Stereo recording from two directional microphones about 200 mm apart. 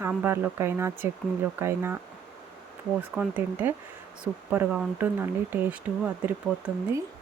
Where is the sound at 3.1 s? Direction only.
5° right (ahead or behind).